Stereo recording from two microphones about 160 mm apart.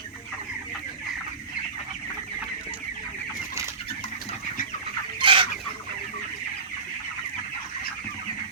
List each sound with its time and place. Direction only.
5.2 s chicken: 30° right (ahead or behind)